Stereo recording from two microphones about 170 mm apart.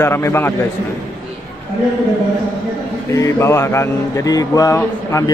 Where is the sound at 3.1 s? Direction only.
15° left (ahead or behind).